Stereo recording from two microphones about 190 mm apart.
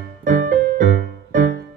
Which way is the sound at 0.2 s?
45° right (ahead or behind).